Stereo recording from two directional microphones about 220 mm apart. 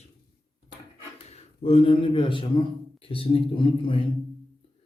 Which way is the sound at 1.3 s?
25° left (ahead or behind).